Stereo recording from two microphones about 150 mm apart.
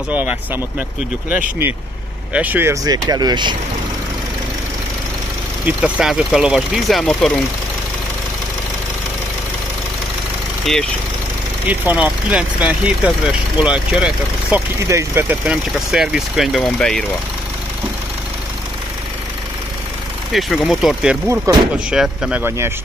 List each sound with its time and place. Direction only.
0.1 s speech: 10° right (ahead or behind)
2.3 s speech: 10° right (ahead or behind); by 3.5 s 30° right (ahead or behind)
5.7 s speech: 5° right (ahead or behind)
10.6 s speech: centre (ahead or behind)
11.6 s speech: 10° right (ahead or behind)
14.9 s speech: 15° right (ahead or behind); by 17.0 s centre (ahead or behind)
20.3 s speech: centre (ahead or behind)
21.5 s speech: 20° right (ahead or behind)
21.9 s speech: 5° right (ahead or behind)